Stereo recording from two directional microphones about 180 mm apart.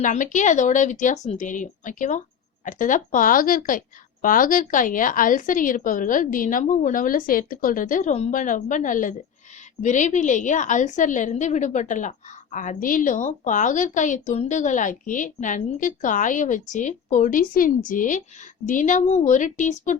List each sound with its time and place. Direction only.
0.0 s a woman's voice: 45° left (ahead or behind)